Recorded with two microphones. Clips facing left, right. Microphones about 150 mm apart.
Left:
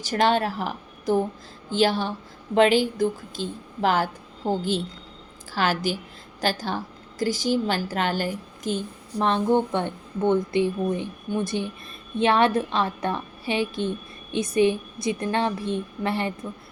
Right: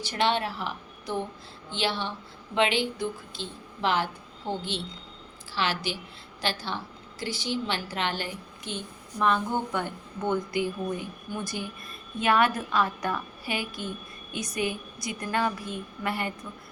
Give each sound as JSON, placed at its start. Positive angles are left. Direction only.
{"t": 0.0, "sound": "a woman's voice", "side_deg": 45}